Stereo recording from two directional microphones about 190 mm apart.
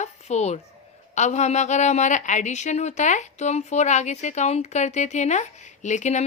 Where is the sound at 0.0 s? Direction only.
35° left (ahead or behind).